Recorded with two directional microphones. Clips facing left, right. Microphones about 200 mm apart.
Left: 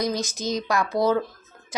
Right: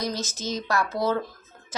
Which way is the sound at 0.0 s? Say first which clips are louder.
Left 4 dB; 15° left (ahead or behind).